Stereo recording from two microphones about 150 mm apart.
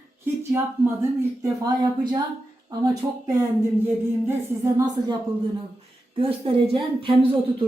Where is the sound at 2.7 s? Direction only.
25° right (ahead or behind).